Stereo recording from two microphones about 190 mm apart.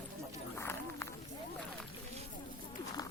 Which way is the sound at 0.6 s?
15° left (ahead or behind).